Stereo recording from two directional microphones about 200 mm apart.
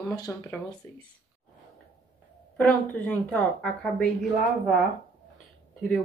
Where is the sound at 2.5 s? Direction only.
5° left (ahead or behind).